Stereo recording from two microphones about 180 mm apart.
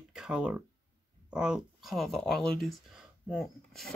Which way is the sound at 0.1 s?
5° right (ahead or behind).